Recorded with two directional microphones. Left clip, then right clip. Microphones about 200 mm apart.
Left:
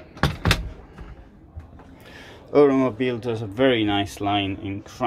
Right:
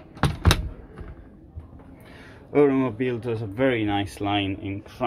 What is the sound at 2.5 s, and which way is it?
Speech, 5° left (ahead or behind).